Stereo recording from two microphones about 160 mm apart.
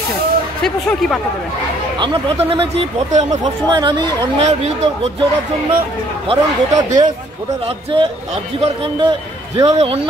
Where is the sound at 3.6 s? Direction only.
30° right (ahead or behind).